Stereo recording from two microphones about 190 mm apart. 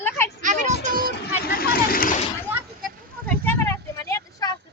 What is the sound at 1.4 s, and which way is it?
Speech, 50° left (ahead or behind).